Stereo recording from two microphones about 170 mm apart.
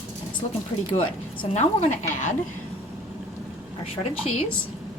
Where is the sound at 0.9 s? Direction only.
35° left (ahead or behind).